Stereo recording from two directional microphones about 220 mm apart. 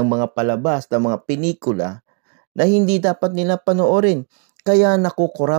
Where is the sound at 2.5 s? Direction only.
35° right (ahead or behind).